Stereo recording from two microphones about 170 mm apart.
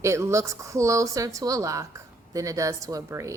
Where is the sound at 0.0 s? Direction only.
15° right (ahead or behind).